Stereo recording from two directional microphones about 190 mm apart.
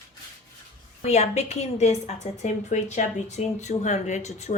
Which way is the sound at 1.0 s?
35° left (ahead or behind).